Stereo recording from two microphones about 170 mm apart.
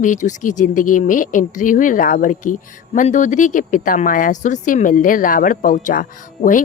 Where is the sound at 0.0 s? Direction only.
50° left (ahead or behind).